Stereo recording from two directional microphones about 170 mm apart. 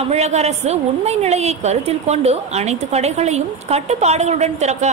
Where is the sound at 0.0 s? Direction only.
40° right (ahead or behind).